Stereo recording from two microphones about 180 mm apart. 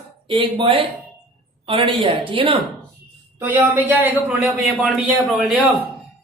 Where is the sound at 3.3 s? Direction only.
10° right (ahead or behind).